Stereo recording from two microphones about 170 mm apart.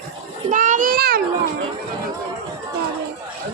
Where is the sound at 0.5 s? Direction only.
50° right (ahead or behind).